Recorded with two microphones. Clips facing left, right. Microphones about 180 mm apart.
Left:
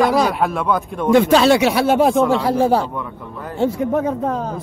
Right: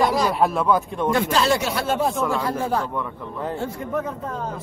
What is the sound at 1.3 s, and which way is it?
Speech, 75° left (ahead or behind).